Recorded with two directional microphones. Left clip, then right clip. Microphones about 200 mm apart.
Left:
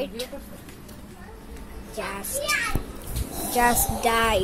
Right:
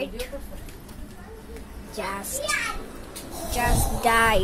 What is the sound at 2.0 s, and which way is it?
Speech, centre (ahead or behind).